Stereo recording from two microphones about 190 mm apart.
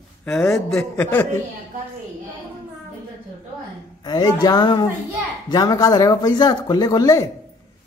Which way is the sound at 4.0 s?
20° left (ahead or behind).